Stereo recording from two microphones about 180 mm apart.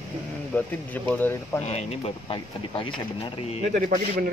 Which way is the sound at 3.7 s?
50° right (ahead or behind).